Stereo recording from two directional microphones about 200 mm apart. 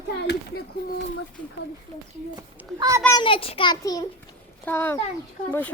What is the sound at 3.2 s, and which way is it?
A child's voice, 25° left (ahead or behind).